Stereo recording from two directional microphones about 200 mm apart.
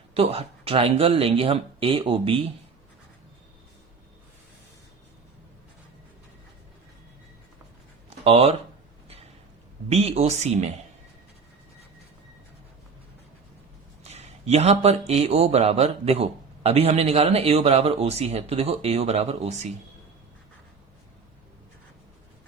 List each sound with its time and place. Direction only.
0.1 s speech: 30° right (ahead or behind)
8.2 s speech: 30° right (ahead or behind)
9.9 s speech: 30° right (ahead or behind)
14.1 s speech: 35° right (ahead or behind)